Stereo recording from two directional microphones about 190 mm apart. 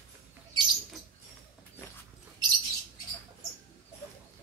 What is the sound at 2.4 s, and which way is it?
Bird, 20° right (ahead or behind).